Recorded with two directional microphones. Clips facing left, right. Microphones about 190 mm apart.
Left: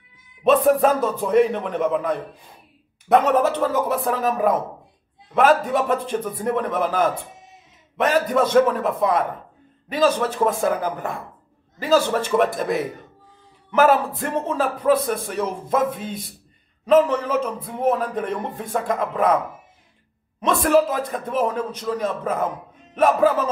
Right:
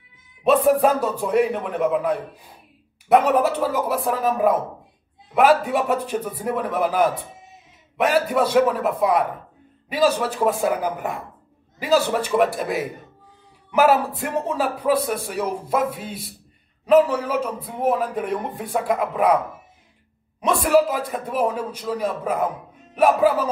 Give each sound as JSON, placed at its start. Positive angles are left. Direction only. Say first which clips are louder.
{"t": 0.4, "sound": "speech", "louder": "even", "side_deg": -5}
{"t": 16.8, "sound": "speech", "louder": "even", "side_deg": -5}
{"t": 20.3, "sound": "speech", "louder": "even", "side_deg": -10}